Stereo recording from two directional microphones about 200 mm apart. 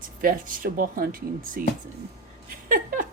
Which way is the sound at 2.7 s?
45° right (ahead or behind).